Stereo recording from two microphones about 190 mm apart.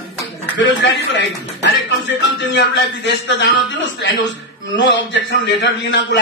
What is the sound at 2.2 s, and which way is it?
A man's voice, 70° left (ahead or behind).